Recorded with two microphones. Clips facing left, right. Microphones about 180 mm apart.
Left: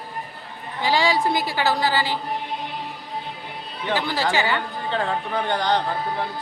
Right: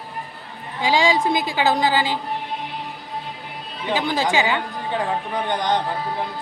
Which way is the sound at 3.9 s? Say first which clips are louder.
Right 2 dB; 15° right (ahead or behind).